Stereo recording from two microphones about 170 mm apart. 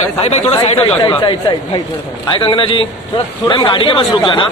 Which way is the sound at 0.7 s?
30° left (ahead or behind).